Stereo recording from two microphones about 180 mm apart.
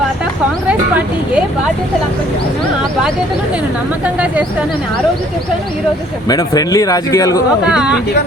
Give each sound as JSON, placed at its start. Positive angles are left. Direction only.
{"t": 4.0, "sound": "speech", "side_deg": -10}
{"t": 6.2, "sound": "speech", "side_deg": 20}
{"t": 7.6, "sound": "a woman's voice", "side_deg": -5}